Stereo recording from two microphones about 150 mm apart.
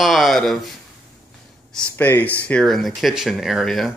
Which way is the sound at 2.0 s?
10° left (ahead or behind).